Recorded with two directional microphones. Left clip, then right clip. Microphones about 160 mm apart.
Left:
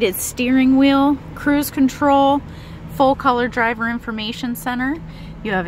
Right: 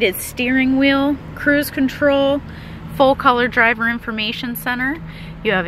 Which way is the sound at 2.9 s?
Centre (ahead or behind).